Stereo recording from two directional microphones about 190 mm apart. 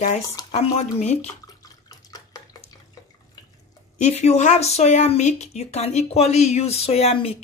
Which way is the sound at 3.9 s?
35° left (ahead or behind).